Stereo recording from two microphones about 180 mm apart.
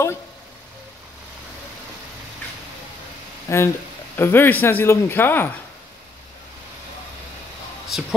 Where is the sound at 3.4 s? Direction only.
15° left (ahead or behind).